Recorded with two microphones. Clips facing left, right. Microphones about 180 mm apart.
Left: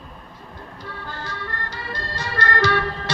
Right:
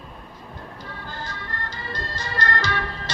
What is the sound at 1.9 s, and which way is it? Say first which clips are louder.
Music: left 2 dB; 60° left (ahead or behind).